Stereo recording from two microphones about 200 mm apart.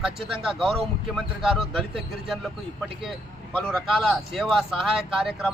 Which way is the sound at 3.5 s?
Centre (ahead or behind).